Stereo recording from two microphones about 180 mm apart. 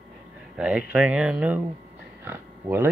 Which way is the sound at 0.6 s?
5° right (ahead or behind).